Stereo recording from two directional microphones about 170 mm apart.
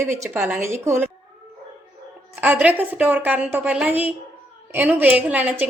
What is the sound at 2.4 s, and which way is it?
A woman's voice, 10° right (ahead or behind).